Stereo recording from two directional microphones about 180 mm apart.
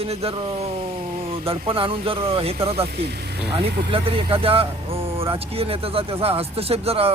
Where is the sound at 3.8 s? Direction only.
30° right (ahead or behind).